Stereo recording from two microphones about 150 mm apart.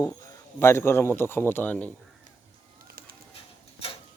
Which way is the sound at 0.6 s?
15° left (ahead or behind).